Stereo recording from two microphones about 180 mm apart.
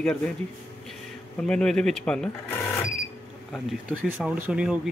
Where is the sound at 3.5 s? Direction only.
5° right (ahead or behind).